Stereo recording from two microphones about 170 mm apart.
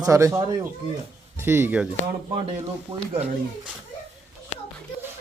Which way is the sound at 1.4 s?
15° right (ahead or behind).